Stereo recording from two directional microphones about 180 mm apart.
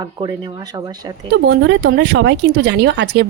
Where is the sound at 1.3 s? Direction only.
65° right (ahead or behind).